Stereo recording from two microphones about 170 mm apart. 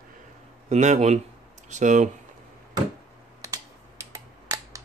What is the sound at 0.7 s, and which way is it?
Speech, 45° right (ahead or behind).